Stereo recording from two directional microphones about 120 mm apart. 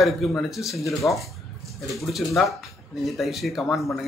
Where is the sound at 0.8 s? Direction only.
25° left (ahead or behind).